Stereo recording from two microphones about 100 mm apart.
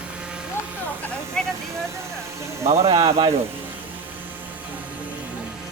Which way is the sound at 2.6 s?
85° right.